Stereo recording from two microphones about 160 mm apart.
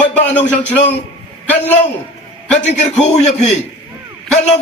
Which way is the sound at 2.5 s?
45° left (ahead or behind).